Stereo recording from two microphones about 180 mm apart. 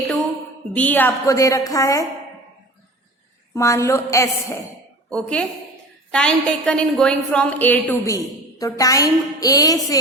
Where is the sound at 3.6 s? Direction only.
15° left (ahead or behind).